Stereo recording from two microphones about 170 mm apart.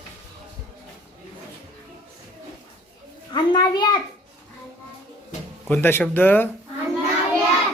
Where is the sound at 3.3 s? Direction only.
25° left (ahead or behind).